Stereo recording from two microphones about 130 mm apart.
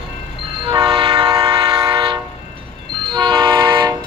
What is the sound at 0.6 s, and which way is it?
Train, 40° right (ahead or behind).